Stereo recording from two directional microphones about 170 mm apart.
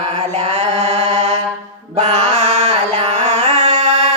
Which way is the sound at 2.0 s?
40° right (ahead or behind).